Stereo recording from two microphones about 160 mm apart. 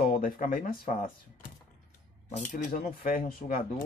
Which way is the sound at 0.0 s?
60° left (ahead or behind).